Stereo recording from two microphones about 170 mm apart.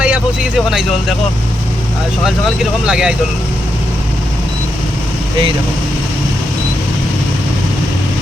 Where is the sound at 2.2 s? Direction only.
5° right (ahead or behind).